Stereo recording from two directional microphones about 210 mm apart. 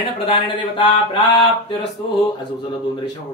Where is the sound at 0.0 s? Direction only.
25° left (ahead or behind).